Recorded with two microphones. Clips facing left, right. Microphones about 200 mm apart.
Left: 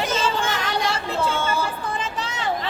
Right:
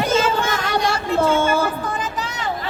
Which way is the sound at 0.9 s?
50° right (ahead or behind).